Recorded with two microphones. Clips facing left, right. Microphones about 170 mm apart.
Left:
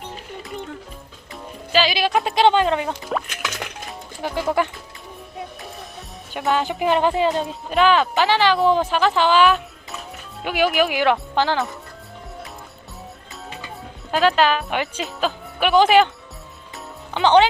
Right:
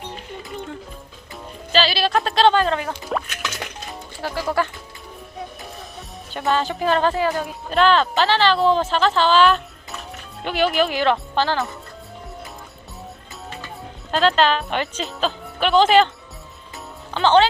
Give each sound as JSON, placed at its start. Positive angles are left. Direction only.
{"t": 1.7, "sound": "speech", "side_deg": 15}
{"t": 2.9, "sound": "music", "side_deg": 0}
{"t": 4.2, "sound": "speech", "side_deg": 20}
{"t": 6.5, "sound": "speech", "side_deg": 15}
{"t": 7.7, "sound": "speech", "side_deg": 10}
{"t": 14.1, "sound": "speech", "side_deg": 10}
{"t": 17.2, "sound": "speech", "side_deg": 15}